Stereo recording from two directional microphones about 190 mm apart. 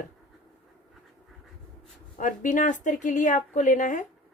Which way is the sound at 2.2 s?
40° left (ahead or behind).